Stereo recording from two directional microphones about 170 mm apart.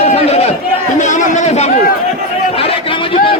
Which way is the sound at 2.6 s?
35° left (ahead or behind).